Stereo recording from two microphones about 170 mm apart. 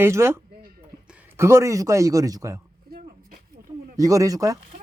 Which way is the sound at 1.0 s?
10° right (ahead or behind).